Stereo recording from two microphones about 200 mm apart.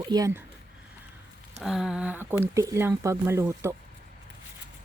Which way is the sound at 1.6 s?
Centre (ahead or behind).